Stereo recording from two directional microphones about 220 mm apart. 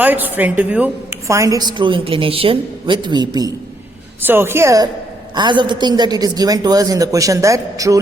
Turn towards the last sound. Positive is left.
turn(degrees=-15)  # may be behind; listen again after turning